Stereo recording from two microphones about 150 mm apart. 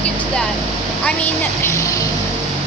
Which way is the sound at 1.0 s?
10° left (ahead or behind).